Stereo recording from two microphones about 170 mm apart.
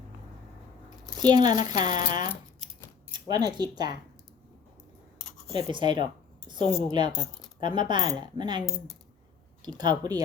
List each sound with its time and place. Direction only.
0.9 s speech: 25° right (ahead or behind)
2.0 s speech: 50° left (ahead or behind)
3.1 s speech: 25° right (ahead or behind)
5.7 s a woman's voice: 25° right (ahead or behind)
6.6 s a woman's voice: 40° left (ahead or behind)
6.9 s a woman's voice: 25° right (ahead or behind)
9.6 s a woman's voice: 25° right (ahead or behind)